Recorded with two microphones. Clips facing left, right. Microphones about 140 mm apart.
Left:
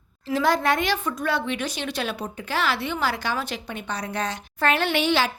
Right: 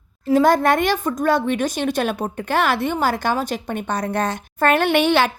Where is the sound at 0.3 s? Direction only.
50° right (ahead or behind).